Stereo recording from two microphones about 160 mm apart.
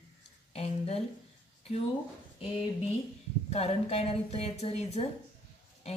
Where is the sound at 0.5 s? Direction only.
40° left (ahead or behind).